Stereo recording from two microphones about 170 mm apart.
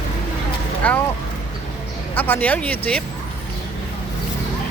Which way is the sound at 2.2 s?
10° left (ahead or behind).